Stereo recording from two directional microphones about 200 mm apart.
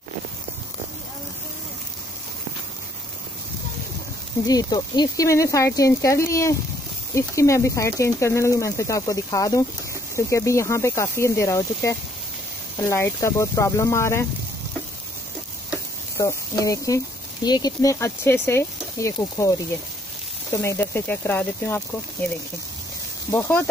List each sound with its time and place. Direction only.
4.5 s speech: 20° left (ahead or behind)
16.2 s speech: 15° left (ahead or behind)
20.5 s speech: 15° left (ahead or behind)
23.3 s speech: 10° left (ahead or behind)